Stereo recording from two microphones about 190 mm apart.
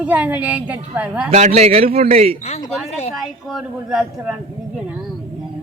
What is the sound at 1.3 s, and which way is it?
A man's voice, 35° right (ahead or behind).